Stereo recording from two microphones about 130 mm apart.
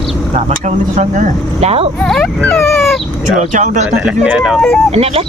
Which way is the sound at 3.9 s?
10° right (ahead or behind).